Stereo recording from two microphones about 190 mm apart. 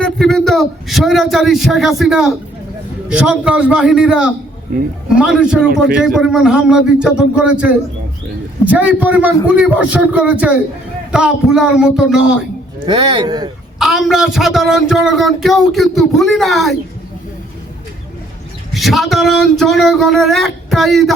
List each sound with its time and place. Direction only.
0.0 s a man's voice: centre (ahead or behind)
12.8 s a man's voice: 25° right (ahead or behind)
13.7 s speech: centre (ahead or behind)
18.7 s speech: centre (ahead or behind)